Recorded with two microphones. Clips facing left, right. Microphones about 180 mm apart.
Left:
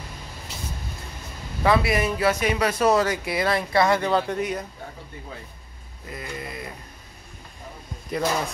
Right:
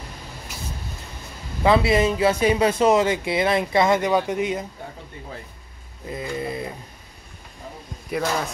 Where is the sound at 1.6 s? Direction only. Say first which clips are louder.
Right 3 dB; 25° right (ahead or behind).